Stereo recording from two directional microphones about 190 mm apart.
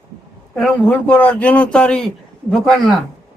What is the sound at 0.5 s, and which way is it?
A man's voice, 5° left (ahead or behind).